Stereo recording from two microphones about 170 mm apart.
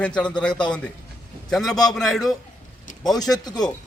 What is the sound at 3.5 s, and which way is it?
Speech, 25° left (ahead or behind).